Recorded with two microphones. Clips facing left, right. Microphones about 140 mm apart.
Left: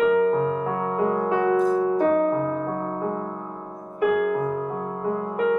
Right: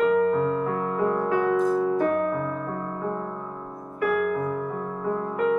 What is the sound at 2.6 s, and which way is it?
Music, 15° left (ahead or behind).